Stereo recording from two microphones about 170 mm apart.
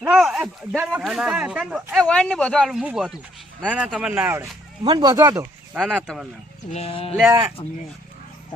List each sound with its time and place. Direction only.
0.0 s a sound: 5° right (ahead or behind)
0.9 s speech: 5° right (ahead or behind)
4.8 s speech: 25° right (ahead or behind)
5.7 s speech: 5° right (ahead or behind)
6.7 s speech: 35° left (ahead or behind)
7.2 s speech: 15° right (ahead or behind)